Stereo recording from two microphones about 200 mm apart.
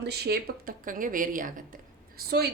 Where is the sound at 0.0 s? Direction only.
55° right (ahead or behind).